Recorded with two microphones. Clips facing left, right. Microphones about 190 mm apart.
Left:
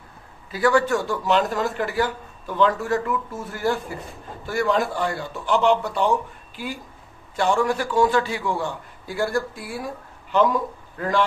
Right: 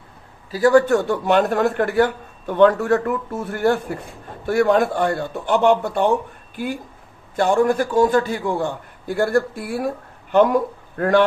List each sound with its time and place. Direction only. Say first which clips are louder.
0.5 s a man's voice: right 5 dB; 40° right (ahead or behind); by 11.2 s 60° right (ahead or behind)